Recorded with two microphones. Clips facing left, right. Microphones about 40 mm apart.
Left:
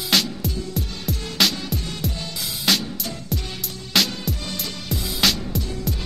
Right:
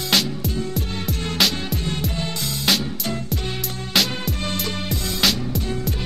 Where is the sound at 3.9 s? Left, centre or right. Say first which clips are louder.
Even; centre.